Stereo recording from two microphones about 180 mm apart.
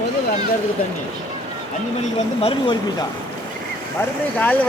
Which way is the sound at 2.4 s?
30° left (ahead or behind).